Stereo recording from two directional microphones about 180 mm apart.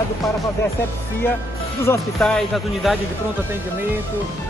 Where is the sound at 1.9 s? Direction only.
15° left (ahead or behind).